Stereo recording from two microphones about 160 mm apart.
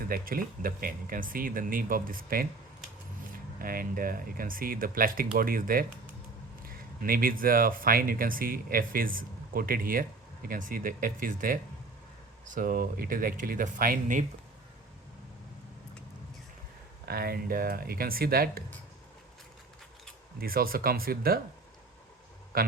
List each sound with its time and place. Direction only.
0.1 s speech: 60° right (ahead or behind)
3.6 s speech: 65° right (ahead or behind)
17.1 s speech: 75° right (ahead or behind)
20.4 s speech: 65° right (ahead or behind)
22.5 s a man's voice: 70° right (ahead or behind)